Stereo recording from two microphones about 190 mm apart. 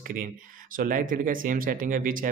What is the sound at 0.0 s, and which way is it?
Speech, 45° right (ahead or behind).